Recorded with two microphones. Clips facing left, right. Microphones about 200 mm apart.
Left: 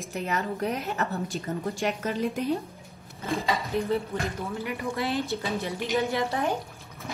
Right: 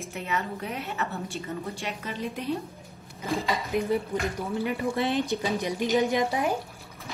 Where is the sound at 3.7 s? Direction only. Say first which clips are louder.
Right 3 dB; 15° right (ahead or behind).